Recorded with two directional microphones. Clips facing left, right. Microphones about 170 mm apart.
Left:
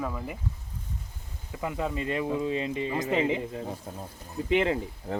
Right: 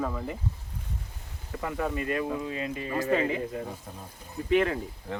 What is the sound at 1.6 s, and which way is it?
Speech, 20° left (ahead or behind).